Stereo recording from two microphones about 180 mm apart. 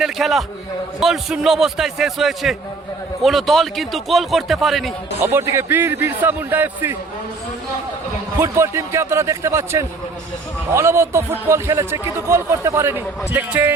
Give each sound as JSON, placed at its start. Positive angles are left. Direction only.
{"t": 0.0, "sound": "a man's voice", "side_deg": 0}
{"t": 5.2, "sound": "a man's voice", "side_deg": -15}
{"t": 8.4, "sound": "a man's voice", "side_deg": -15}